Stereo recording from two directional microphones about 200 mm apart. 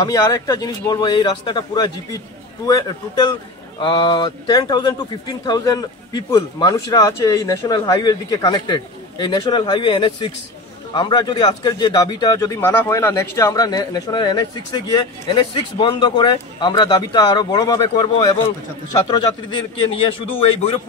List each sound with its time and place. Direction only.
0.0 s a man's voice: 15° left (ahead or behind)